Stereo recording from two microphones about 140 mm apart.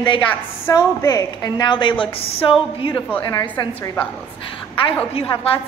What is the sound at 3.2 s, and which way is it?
Speech, 25° left (ahead or behind).